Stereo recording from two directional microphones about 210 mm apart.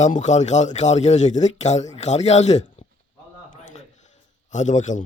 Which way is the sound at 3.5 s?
35° left (ahead or behind).